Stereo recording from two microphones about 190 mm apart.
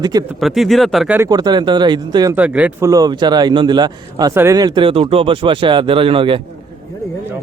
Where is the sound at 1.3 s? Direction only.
20° right (ahead or behind).